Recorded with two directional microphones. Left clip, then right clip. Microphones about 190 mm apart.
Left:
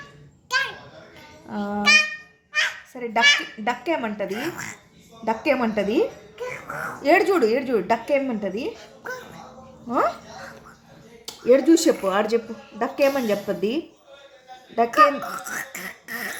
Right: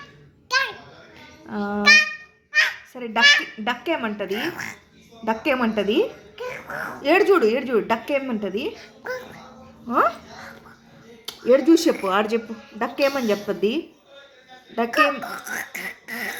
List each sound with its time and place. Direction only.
0.4 s a sound: 15° left (ahead or behind)
1.5 s speech: 10° left (ahead or behind)
2.5 s honk: 15° left (ahead or behind)
3.0 s a woman's voice: 10° left (ahead or behind)
11.3 s a woman's voice: 10° left (ahead or behind)